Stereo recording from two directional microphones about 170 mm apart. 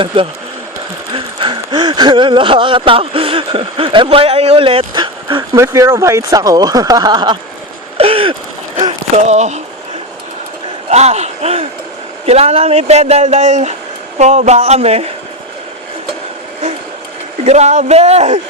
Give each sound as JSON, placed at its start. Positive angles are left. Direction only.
{"t": 1.1, "sound": "speech", "side_deg": -30}
{"t": 5.5, "sound": "speech", "side_deg": -15}
{"t": 7.9, "sound": "a sound", "side_deg": -35}
{"t": 10.8, "sound": "speech", "side_deg": -40}
{"t": 17.4, "sound": "speech", "side_deg": -40}